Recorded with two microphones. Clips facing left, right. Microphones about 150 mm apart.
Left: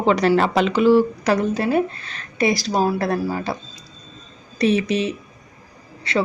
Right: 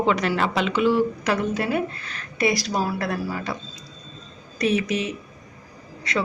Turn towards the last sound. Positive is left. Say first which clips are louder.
# left 4 dB
turn(degrees=30)  # may be behind; listen again after turning